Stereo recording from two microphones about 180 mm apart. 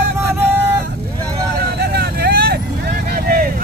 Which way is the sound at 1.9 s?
60° right (ahead or behind).